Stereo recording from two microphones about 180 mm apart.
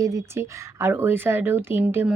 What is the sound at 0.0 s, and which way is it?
Speech, 20° right (ahead or behind).